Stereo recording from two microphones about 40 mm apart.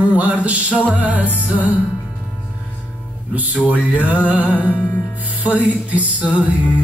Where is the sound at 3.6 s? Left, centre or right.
Right.